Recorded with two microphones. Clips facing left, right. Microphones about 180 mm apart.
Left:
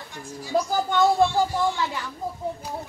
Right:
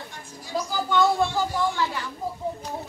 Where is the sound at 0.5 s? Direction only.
55° left (ahead or behind).